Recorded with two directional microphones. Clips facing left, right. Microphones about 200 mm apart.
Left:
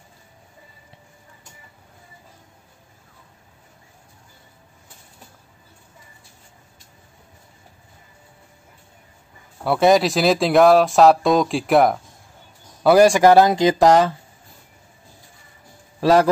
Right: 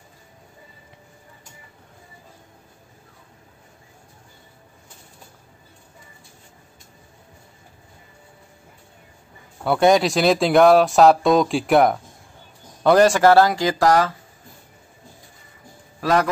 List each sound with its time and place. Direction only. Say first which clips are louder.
9.7 s speech: left 1 dB; centre (ahead or behind); by 14.1 s 20° left (ahead or behind)
16.0 s a man's voice: left 5 dB; 30° left (ahead or behind)